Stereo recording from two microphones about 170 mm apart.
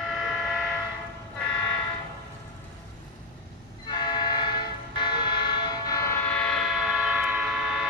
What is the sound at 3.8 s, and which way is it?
Train, 25° left (ahead or behind).